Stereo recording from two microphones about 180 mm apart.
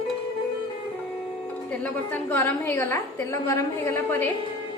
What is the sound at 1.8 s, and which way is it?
A woman's voice, 10° left (ahead or behind).